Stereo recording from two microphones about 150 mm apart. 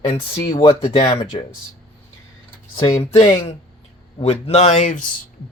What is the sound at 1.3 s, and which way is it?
Speech, 45° left (ahead or behind).